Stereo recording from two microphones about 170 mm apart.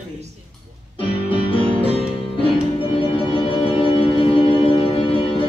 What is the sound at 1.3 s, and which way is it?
Music, 30° left (ahead or behind).